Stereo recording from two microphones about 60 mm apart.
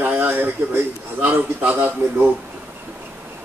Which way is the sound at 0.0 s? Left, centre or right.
Right.